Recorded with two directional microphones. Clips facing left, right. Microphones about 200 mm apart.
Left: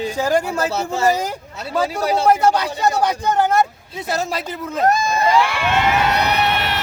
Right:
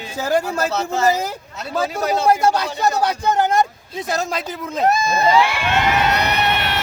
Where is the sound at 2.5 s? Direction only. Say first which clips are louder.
Left 1 dB; 10° left (ahead or behind).